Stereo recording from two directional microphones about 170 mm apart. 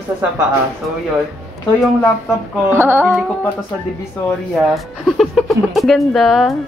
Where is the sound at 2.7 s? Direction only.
15° right (ahead or behind).